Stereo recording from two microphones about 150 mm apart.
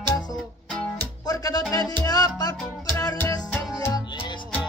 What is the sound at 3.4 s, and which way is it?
Music, 5° left (ahead or behind).